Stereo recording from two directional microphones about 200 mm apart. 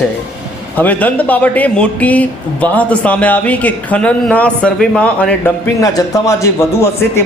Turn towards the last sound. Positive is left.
turn(degrees=15)  # may be behind; listen again after turning